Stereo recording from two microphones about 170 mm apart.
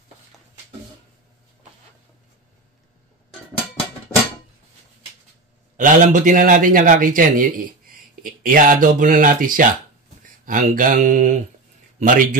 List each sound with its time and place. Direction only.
5.8 s a man's voice: 50° right (ahead or behind)